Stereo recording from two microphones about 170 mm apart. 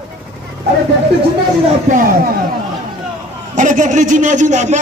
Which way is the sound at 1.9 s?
50° right (ahead or behind).